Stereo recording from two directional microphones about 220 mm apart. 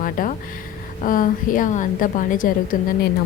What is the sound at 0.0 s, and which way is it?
Speech, 40° left (ahead or behind).